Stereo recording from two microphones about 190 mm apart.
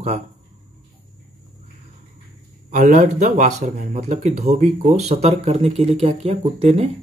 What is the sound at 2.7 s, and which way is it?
Speech, 40° right (ahead or behind).